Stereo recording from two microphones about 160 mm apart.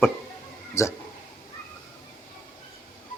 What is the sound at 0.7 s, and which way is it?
Speech, 20° left (ahead or behind).